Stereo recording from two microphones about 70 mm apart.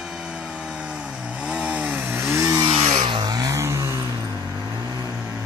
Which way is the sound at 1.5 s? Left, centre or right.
Centre.